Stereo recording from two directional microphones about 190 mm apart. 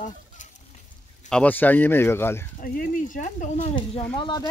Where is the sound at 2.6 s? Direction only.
45° left (ahead or behind).